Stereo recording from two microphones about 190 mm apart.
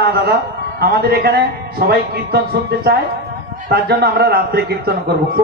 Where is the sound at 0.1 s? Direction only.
55° right (ahead or behind).